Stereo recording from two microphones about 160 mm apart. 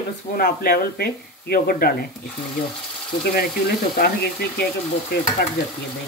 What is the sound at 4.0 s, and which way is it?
Frying, 70° left (ahead or behind).